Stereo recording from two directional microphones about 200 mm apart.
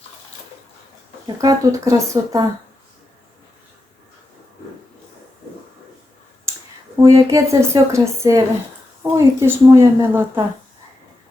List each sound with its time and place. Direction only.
1.4 s speech: 15° right (ahead or behind)
6.9 s speech: 15° right (ahead or behind)